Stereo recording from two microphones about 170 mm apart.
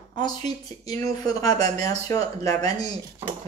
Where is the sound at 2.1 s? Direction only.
20° left (ahead or behind).